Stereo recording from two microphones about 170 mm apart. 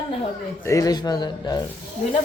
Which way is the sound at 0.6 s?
20° left (ahead or behind).